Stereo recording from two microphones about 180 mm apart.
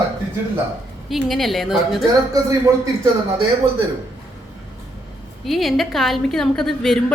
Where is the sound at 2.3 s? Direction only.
20° right (ahead or behind).